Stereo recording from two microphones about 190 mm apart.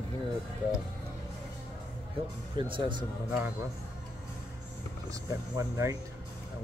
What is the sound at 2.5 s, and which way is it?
Speech, 25° right (ahead or behind).